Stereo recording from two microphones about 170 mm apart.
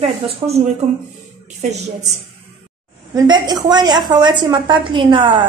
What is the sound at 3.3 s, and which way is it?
A woman's voice, 25° right (ahead or behind).